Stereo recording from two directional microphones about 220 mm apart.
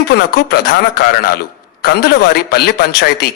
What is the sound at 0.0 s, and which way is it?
A man's voice, 45° left (ahead or behind).